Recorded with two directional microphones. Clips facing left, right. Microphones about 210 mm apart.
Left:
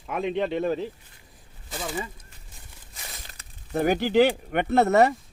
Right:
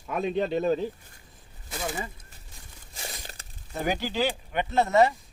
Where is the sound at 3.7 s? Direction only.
55° left (ahead or behind).